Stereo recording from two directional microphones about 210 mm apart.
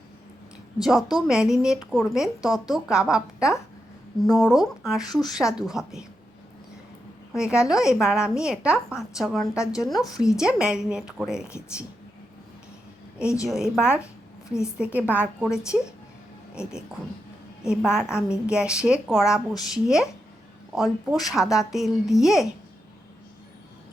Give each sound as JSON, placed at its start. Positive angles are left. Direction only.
{"t": 0.8, "sound": "a woman's voice", "side_deg": 0}
{"t": 7.3, "sound": "a woman's voice", "side_deg": -5}
{"t": 13.2, "sound": "a woman's voice", "side_deg": 15}
{"t": 13.5, "sound": "a woman's voice", "side_deg": -5}
{"t": 17.6, "sound": "a woman's voice", "side_deg": -5}
{"t": 21.1, "sound": "a woman's voice", "side_deg": 0}